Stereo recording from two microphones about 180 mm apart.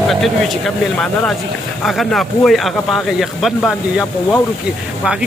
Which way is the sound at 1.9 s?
Centre (ahead or behind).